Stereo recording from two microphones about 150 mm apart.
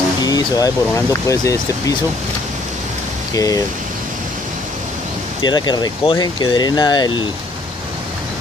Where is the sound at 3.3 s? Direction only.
25° left (ahead or behind).